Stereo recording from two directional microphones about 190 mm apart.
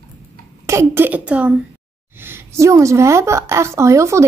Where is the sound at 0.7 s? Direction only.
15° right (ahead or behind).